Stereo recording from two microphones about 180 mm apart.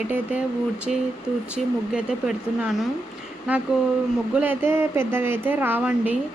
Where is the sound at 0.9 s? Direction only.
40° left (ahead or behind).